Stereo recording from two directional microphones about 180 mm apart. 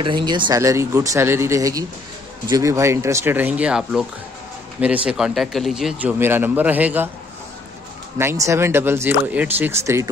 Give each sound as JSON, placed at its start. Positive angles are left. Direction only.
{"t": 0.0, "sound": "speech", "side_deg": -25}
{"t": 8.2, "sound": "speech", "side_deg": -15}